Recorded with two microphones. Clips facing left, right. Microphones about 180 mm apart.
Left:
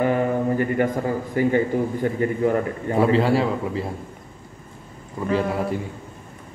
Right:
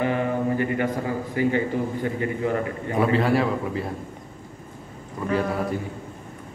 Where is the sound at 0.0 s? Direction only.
45° left (ahead or behind).